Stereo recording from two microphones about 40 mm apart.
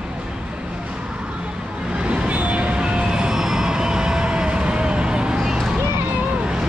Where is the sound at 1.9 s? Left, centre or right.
Right.